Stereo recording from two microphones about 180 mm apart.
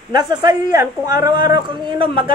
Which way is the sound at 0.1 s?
25° right (ahead or behind).